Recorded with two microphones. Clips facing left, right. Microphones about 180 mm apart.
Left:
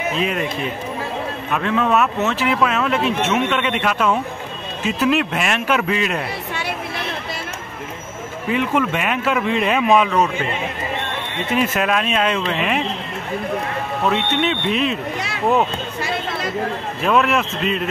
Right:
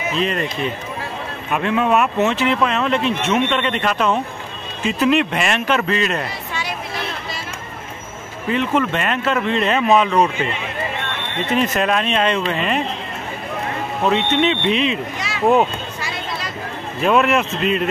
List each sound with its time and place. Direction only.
0.2 s speech: 5° left (ahead or behind)
1.5 s speech: 5° right (ahead or behind)
2.3 s speech: 5° left (ahead or behind)
8.5 s speech: 10° left (ahead or behind)
11.5 s speech: 5° left (ahead or behind)
14.0 s speech: 5° left (ahead or behind)
16.0 s a sound: 55° left (ahead or behind)
17.0 s speech: centre (ahead or behind)